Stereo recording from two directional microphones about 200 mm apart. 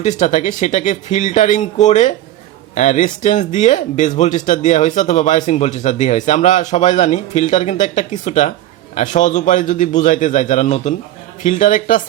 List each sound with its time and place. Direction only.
0.0 s speech: 35° left (ahead or behind)